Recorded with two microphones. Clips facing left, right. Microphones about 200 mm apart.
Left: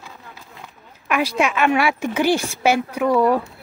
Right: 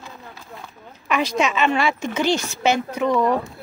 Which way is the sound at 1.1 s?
10° left (ahead or behind).